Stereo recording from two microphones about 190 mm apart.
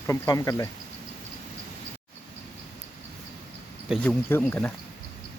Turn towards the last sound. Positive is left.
turn(degrees=10)  # may be behind; listen again after turning